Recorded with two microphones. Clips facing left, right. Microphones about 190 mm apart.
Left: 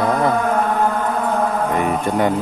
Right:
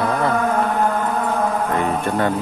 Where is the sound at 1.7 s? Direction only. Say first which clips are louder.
Left 1 dB; 15° left (ahead or behind).